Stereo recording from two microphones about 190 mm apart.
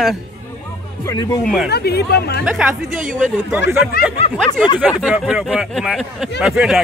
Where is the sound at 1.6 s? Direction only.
60° left (ahead or behind).